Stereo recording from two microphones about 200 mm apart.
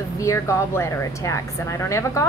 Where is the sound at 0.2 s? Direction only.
15° left (ahead or behind).